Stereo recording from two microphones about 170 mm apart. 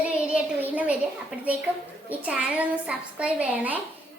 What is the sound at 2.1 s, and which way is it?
A woman's voice, 10° right (ahead or behind).